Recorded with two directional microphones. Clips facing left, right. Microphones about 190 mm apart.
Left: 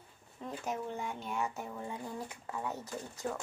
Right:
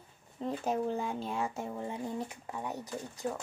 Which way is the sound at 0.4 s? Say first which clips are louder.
Right 6 dB; 30° right (ahead or behind).